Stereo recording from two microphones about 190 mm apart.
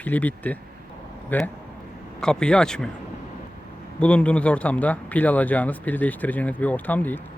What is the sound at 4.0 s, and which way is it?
Speech, 5° left (ahead or behind).